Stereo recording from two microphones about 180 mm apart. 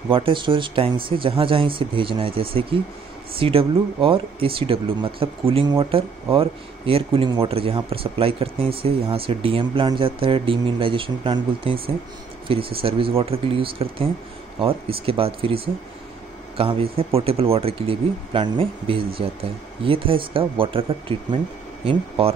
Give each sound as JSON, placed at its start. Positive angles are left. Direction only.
{"t": 0.1, "sound": "speech", "side_deg": -30}